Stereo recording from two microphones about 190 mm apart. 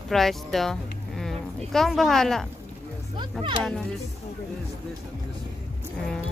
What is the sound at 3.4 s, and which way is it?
Speech, 25° right (ahead or behind).